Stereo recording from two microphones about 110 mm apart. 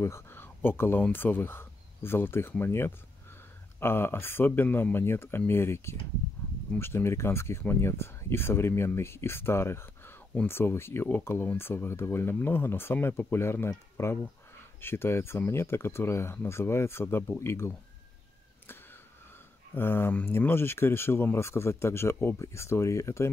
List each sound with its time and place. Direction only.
0.0 s speech: 20° left (ahead or behind)
19.7 s speech: 20° left (ahead or behind)